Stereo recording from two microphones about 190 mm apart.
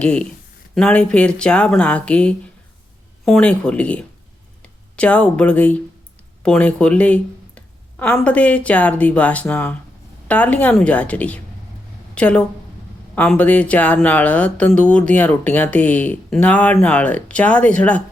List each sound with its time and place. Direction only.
0.0 s a woman's voice: 5° left (ahead or behind)